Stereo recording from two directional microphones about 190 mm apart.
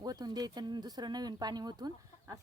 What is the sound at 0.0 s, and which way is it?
Speech, 20° right (ahead or behind).